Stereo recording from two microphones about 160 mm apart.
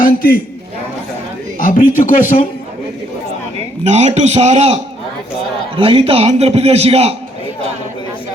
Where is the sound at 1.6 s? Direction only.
55° left (ahead or behind).